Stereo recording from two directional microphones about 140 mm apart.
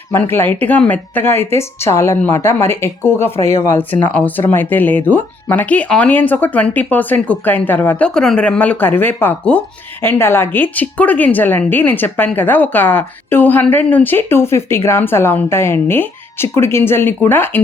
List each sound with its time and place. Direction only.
0.1 s speech: 15° left (ahead or behind)